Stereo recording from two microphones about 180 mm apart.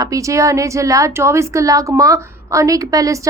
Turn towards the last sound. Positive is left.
turn(degrees=-20)  # may be behind; listen again after turning